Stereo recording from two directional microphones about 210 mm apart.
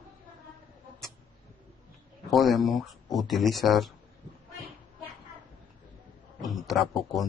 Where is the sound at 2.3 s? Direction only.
Centre (ahead or behind).